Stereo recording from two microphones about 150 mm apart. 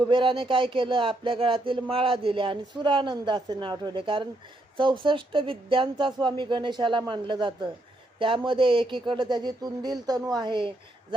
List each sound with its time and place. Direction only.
0.1 s speech: 35° right (ahead or behind)